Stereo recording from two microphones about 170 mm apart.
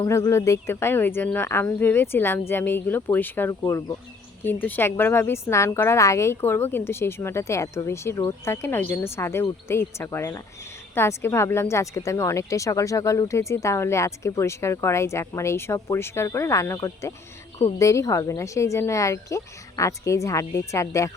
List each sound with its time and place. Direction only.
0.0 s speech: 15° left (ahead or behind)